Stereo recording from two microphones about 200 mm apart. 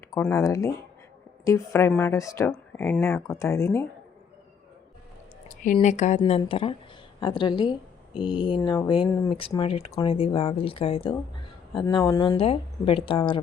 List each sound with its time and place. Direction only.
0.2 s speech: 15° left (ahead or behind)
5.8 s speech: 35° left (ahead or behind); by 12.4 s 15° left (ahead or behind)
12.4 s speech: 30° left (ahead or behind)